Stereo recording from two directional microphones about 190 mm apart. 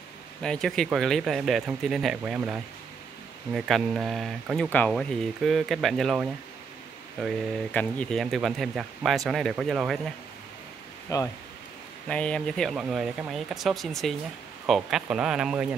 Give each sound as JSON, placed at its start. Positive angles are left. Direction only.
{"t": 0.4, "sound": "speech", "side_deg": 0}
{"t": 11.1, "sound": "speech", "side_deg": 20}
{"t": 12.1, "sound": "speech", "side_deg": 5}